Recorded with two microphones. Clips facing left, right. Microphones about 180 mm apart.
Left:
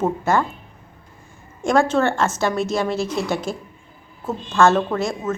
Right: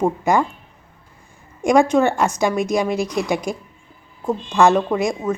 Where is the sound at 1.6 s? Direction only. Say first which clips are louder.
Right 3 dB; 15° right (ahead or behind).